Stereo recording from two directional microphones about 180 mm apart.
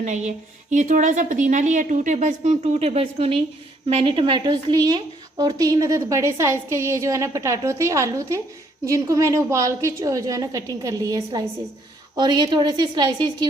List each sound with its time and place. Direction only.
0.0 s a woman's voice: 40° right (ahead or behind); by 13.5 s 25° right (ahead or behind)